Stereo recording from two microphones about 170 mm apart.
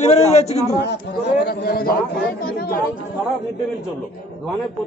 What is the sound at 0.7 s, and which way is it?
A man's voice, 75° left (ahead or behind).